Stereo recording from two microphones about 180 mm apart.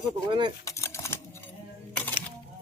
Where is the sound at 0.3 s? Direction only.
25° right (ahead or behind).